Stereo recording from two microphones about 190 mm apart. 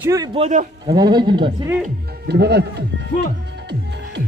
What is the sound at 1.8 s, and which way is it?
Speech, 60° right (ahead or behind).